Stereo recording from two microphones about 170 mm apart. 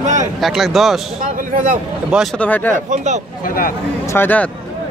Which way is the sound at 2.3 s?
10° left (ahead or behind).